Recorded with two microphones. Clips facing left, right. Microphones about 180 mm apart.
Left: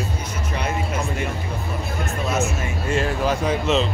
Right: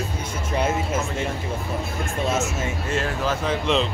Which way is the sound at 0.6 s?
25° right (ahead or behind).